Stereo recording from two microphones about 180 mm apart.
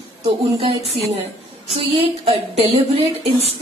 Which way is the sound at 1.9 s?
35° right (ahead or behind).